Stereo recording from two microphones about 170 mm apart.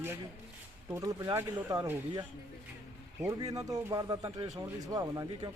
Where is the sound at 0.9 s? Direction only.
20° right (ahead or behind).